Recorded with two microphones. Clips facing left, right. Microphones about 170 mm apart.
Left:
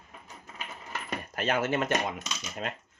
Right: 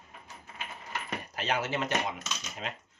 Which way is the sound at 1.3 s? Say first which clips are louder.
Left 4 dB; 50° left (ahead or behind).